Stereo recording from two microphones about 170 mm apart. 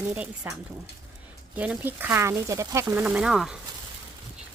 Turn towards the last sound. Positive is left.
turn(degrees=-5)  # may be behind; listen again after turning